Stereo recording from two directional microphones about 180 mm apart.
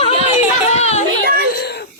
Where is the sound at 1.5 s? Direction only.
60° left (ahead or behind).